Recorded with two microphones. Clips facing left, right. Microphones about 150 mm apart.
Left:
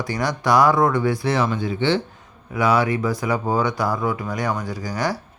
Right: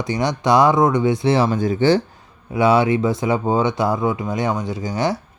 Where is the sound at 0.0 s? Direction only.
20° right (ahead or behind); by 2.0 s 40° right (ahead or behind).